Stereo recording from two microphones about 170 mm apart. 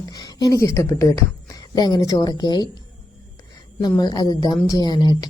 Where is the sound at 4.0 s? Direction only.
25° left (ahead or behind).